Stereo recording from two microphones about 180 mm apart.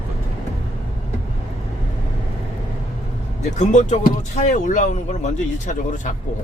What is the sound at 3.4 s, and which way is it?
Speech, 40° left (ahead or behind).